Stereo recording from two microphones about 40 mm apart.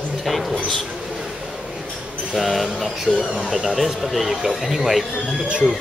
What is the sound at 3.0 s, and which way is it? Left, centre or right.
Speech, right.